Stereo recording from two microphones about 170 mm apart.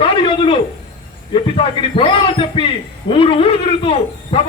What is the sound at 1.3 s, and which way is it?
A man's voice, 30° left (ahead or behind).